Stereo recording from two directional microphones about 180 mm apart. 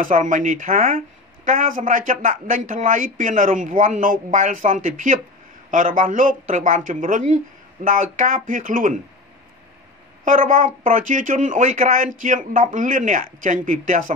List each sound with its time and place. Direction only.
0.0 s speech: 45° right (ahead or behind)
10.2 s speech: 45° right (ahead or behind)